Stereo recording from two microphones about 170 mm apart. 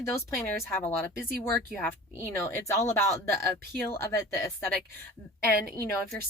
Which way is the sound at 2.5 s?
15° left (ahead or behind).